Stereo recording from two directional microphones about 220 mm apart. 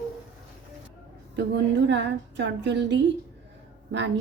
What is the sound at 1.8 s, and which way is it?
A woman's voice, 55° right (ahead or behind).